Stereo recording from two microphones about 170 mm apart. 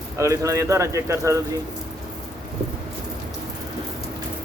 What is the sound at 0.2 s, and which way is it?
Speech, 20° right (ahead or behind).